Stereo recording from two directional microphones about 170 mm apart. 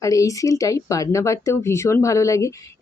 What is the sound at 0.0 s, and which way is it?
Speech, 20° left (ahead or behind).